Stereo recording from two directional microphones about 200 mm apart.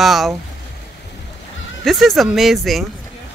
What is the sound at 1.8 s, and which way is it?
Speech, centre (ahead or behind).